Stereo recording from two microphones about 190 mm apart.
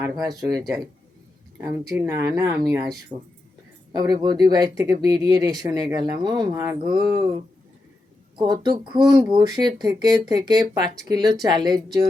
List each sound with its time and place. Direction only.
0.0 s speech: 20° right (ahead or behind)
1.6 s speech: 20° right (ahead or behind)
8.4 s speech: 20° right (ahead or behind)